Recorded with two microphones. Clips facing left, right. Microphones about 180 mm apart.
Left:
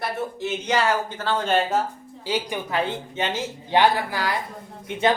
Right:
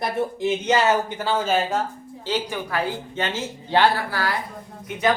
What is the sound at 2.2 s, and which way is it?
A woman's voice, 15° left (ahead or behind).